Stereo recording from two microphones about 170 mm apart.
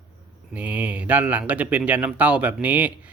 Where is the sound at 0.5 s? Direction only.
10° right (ahead or behind).